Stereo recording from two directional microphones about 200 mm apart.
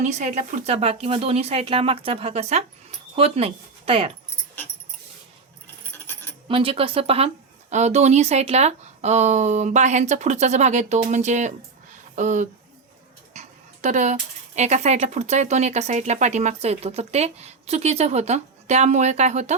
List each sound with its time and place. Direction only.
0.0 s speech: 35° right (ahead or behind)
5.9 s coin: 10° left (ahead or behind)
6.5 s speech: 25° right (ahead or behind)
13.8 s speech: 35° right (ahead or behind)